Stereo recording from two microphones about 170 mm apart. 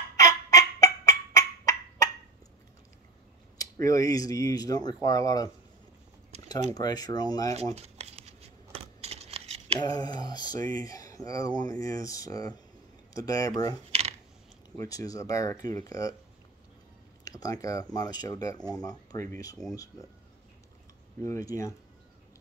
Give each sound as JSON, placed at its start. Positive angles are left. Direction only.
{"t": 0.2, "sound": "fowl", "side_deg": 20}
{"t": 3.5, "sound": "speech", "side_deg": 20}
{"t": 6.7, "sound": "speech", "side_deg": 20}
{"t": 7.7, "sound": "crumpling", "side_deg": -40}
{"t": 9.8, "sound": "speech", "side_deg": 25}
{"t": 14.8, "sound": "speech", "side_deg": 20}
{"t": 17.2, "sound": "a sound", "side_deg": 20}
{"t": 17.9, "sound": "speech", "side_deg": 25}
{"t": 21.2, "sound": "speech", "side_deg": 20}